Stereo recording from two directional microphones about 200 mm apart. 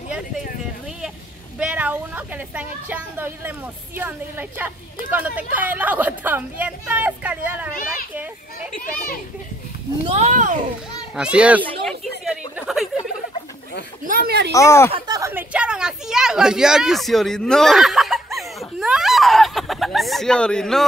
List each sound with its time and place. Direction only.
1.6 s a woman's voice: 5° right (ahead or behind)
10.0 s a child's voice: 30° right (ahead or behind)
11.3 s a woman's voice: 5° right (ahead or behind)
11.8 s a sound: centre (ahead or behind)
14.0 s speech: 45° right (ahead or behind)
14.5 s speech: 15° left (ahead or behind)
14.9 s a sound: 20° right (ahead or behind); by 20.8 s 5° left (ahead or behind)